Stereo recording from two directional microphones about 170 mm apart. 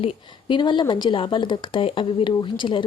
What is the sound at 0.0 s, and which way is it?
Speech, 30° left (ahead or behind).